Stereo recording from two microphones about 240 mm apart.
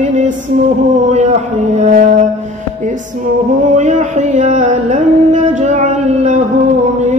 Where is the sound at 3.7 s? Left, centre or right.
Right.